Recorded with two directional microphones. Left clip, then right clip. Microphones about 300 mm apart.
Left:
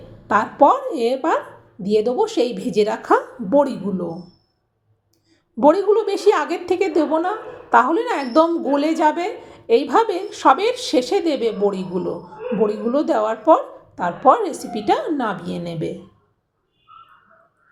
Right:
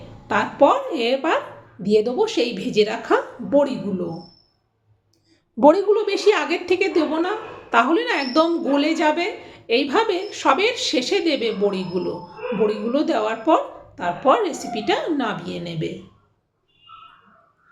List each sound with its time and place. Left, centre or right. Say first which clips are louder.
0.3 s a woman's voice: left 2 dB; centre
1.8 s a woman's voice: even; centre
2.1 s a woman's voice: left 1 dB; centre
5.5 s a woman's voice: even; centre
5.9 s a woman's voice: left 1 dB; centre